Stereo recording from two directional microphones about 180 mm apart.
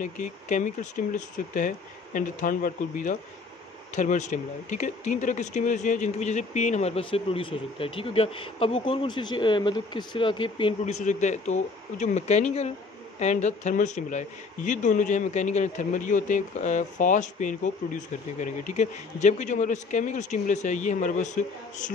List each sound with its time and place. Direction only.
0.0 s speech: 45° left (ahead or behind)